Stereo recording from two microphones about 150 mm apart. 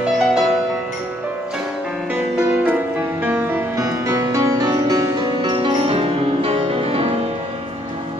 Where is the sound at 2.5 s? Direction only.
10° right (ahead or behind).